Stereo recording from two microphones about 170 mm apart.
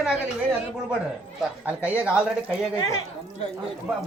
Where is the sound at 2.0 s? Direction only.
5° right (ahead or behind).